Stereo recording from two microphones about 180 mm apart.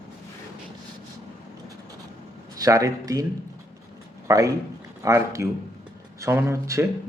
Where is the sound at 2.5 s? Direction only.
20° right (ahead or behind).